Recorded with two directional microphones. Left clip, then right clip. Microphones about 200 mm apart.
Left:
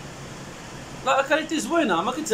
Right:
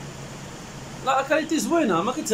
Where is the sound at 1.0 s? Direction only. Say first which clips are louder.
Left 1 dB; centre (ahead or behind).